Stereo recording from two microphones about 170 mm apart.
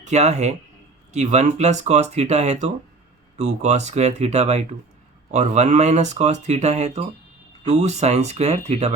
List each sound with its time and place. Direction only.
0.0 s speech: 40° right (ahead or behind)